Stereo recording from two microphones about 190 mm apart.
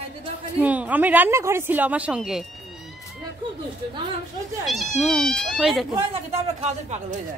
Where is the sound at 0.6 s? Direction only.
10° right (ahead or behind).